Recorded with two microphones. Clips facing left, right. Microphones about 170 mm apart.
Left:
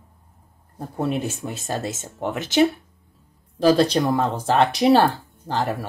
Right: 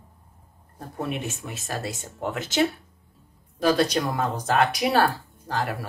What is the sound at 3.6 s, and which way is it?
Speech, 30° left (ahead or behind).